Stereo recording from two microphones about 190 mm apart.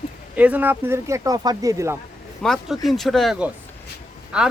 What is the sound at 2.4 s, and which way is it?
Speech, centre (ahead or behind).